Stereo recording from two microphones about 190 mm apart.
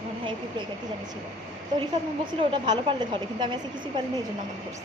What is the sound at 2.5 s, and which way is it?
Speech, 25° right (ahead or behind).